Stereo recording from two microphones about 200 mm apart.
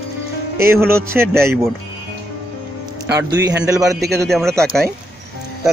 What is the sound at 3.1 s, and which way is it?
Speech, 15° right (ahead or behind).